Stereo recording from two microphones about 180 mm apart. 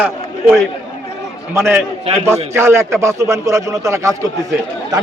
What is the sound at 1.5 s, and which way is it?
A man's voice, 15° right (ahead or behind).